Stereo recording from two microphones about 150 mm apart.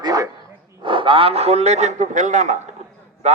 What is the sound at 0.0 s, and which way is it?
Dog, 25° right (ahead or behind).